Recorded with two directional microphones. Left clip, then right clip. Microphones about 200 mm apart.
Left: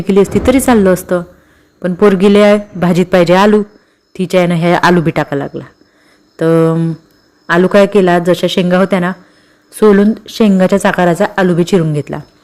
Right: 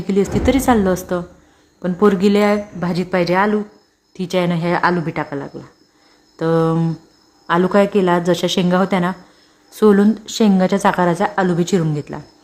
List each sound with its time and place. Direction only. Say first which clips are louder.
0.1 s a man's voice: left 7 dB; 20° left (ahead or behind)